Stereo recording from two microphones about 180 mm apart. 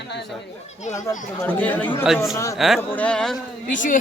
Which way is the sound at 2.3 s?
15° left (ahead or behind).